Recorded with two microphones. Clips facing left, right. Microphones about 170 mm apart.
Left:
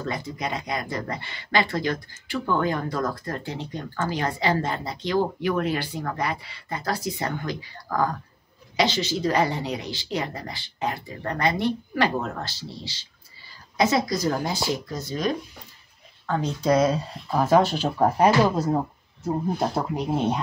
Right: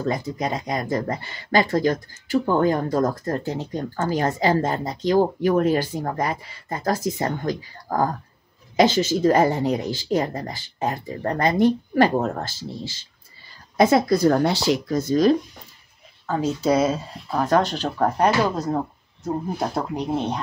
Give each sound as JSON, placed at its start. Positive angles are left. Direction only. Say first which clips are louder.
{"t": 0.1, "sound": "speech", "louder": "right 4 dB", "side_deg": -40}
{"t": 15.0, "sound": "speech", "louder": "right 12 dB", "side_deg": -40}
{"t": 16.3, "sound": "speech", "louder": "right 2 dB", "side_deg": -5}